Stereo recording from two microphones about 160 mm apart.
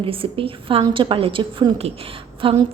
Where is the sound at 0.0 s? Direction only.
35° right (ahead or behind).